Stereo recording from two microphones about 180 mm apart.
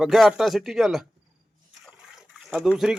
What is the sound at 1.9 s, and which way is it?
Water, 5° right (ahead or behind).